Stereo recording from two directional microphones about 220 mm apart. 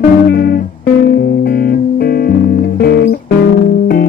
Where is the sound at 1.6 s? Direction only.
40° left (ahead or behind).